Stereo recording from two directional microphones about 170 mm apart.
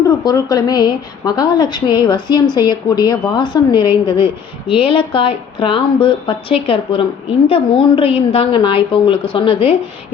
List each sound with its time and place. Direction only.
0.3 s a woman's voice: 20° left (ahead or behind)